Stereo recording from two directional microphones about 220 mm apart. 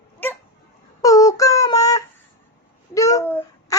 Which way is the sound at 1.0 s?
15° left (ahead or behind).